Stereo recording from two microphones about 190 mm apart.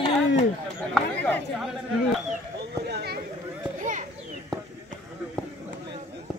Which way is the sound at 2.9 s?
55° right (ahead or behind).